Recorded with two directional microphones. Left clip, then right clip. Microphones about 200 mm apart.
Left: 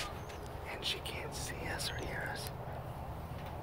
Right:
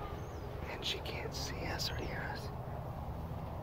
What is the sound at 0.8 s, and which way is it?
Whispering, 5° left (ahead or behind).